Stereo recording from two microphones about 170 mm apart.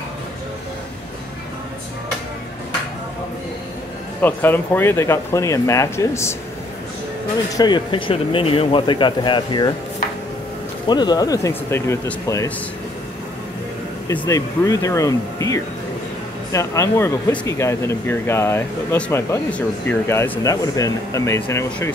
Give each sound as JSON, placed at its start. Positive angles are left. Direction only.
{"t": 4.2, "sound": "speech", "side_deg": 10}
{"t": 7.5, "sound": "speech", "side_deg": 25}
{"t": 10.9, "sound": "speech", "side_deg": 25}
{"t": 14.2, "sound": "speech", "side_deg": 20}